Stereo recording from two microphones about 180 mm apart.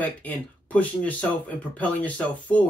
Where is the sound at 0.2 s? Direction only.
10° left (ahead or behind).